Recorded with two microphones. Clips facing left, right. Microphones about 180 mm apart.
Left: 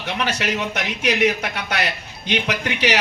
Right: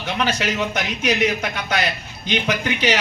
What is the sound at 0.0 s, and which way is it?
A man's voice, 65° left (ahead or behind).